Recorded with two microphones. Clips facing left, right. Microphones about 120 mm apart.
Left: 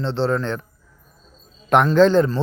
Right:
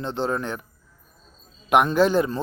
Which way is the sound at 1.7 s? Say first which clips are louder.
Left 4 dB; 10° right (ahead or behind).